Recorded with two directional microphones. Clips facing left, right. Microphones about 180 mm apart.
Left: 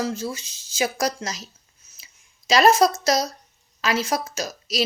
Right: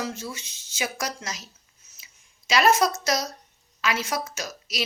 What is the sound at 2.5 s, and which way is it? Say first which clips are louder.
A woman's voice: left 4 dB; 35° left (ahead or behind).